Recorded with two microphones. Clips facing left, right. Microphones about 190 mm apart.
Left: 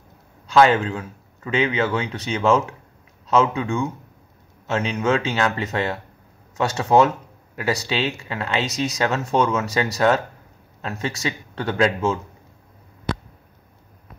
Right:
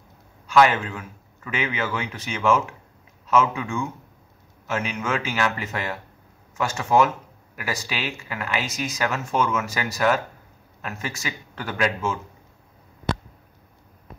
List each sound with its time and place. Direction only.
0.5 s speech: 30° left (ahead or behind)